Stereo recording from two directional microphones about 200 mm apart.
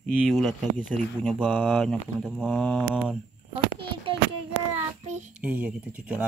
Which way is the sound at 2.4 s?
10° left (ahead or behind).